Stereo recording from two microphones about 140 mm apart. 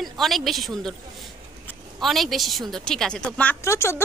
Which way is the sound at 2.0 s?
Centre (ahead or behind).